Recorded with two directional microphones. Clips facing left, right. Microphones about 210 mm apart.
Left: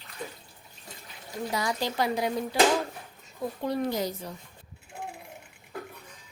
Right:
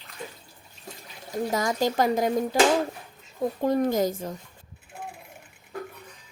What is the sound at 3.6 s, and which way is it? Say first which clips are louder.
Speech: right 6 dB; 45° right (ahead or behind).